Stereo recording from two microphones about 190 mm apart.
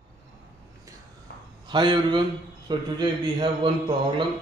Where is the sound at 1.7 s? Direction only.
25° right (ahead or behind).